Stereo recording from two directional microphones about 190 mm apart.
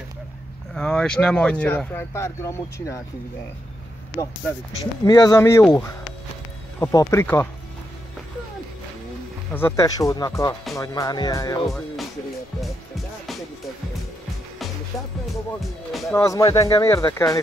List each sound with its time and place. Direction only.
0.7 s speech: 5° left (ahead or behind)
5.0 s speech: 20° left (ahead or behind)
6.8 s speech: 15° left (ahead or behind)
9.5 s speech: 10° left (ahead or behind)
12.5 s music: centre (ahead or behind)
15.6 s speech: centre (ahead or behind)
16.1 s speech: 15° left (ahead or behind)